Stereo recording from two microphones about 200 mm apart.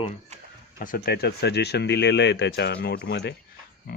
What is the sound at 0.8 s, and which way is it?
Speech, 45° left (ahead or behind).